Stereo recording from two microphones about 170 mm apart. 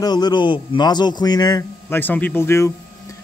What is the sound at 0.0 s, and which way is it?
A man's voice, 25° left (ahead or behind).